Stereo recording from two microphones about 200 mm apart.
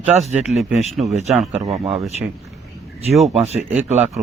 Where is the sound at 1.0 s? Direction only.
35° right (ahead or behind).